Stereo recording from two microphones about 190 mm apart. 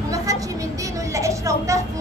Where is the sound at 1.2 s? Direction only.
15° right (ahead or behind).